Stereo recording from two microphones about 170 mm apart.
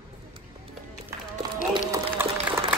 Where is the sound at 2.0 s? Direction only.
10° right (ahead or behind).